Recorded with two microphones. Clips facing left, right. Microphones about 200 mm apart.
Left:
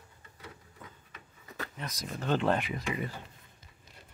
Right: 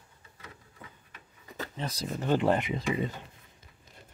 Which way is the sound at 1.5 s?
30° right (ahead or behind).